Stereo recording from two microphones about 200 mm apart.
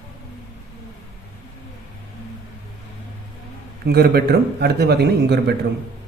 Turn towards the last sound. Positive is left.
turn(degrees=-55)  # may be behind; listen again after turning